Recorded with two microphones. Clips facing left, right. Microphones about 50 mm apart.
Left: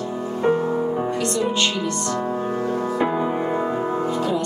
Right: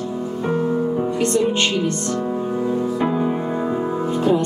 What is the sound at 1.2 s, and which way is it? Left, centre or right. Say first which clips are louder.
Music: right 5 dB; right.